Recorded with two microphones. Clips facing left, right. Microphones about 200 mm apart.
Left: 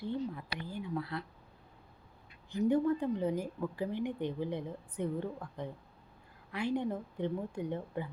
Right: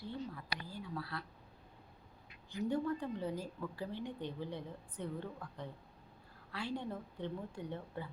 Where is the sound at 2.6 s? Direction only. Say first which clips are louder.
Left 7 dB; 20° left (ahead or behind).